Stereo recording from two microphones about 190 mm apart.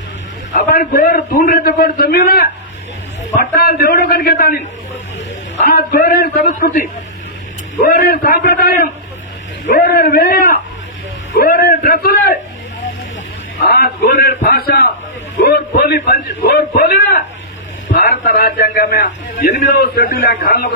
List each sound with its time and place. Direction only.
0.5 s a man's voice: 45° left (ahead or behind)
3.5 s a man's voice: 50° left (ahead or behind)
13.6 s a man's voice: 55° left (ahead or behind)